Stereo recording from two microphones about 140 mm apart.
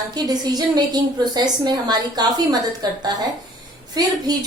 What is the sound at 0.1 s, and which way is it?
A woman's voice, 30° right (ahead or behind).